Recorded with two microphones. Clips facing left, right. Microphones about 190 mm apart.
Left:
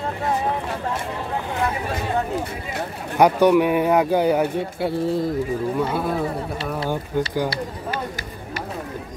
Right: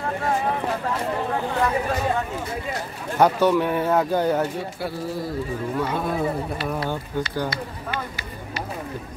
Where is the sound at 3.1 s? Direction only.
15° left (ahead or behind).